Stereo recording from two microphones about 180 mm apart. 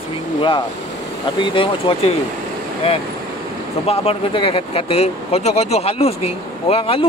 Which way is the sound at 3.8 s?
30° left (ahead or behind).